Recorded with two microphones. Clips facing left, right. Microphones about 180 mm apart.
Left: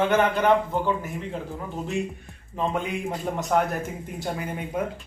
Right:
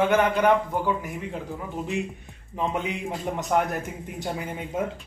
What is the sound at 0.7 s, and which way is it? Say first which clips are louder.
Speech: left 1 dB; 10° right (ahead or behind).